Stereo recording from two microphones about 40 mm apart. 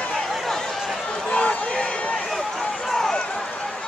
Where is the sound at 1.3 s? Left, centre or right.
Left.